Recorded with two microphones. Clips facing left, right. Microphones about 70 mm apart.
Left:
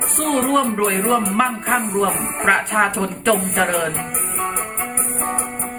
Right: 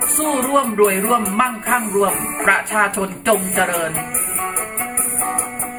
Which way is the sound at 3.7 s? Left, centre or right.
Centre.